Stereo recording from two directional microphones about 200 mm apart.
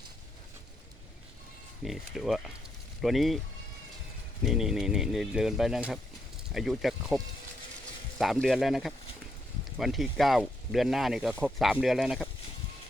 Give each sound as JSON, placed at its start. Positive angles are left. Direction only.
{"t": 1.8, "sound": "speech", "side_deg": 0}
{"t": 4.4, "sound": "speech", "side_deg": 0}
{"t": 8.2, "sound": "speech", "side_deg": 0}